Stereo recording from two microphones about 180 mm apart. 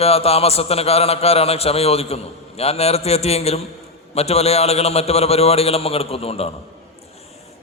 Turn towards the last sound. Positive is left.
turn(degrees=35)  # may be behind; listen again after turning